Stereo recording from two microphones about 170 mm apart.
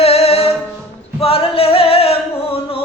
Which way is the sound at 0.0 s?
35° left (ahead or behind).